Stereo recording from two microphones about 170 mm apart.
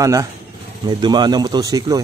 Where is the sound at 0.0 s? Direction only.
20° right (ahead or behind).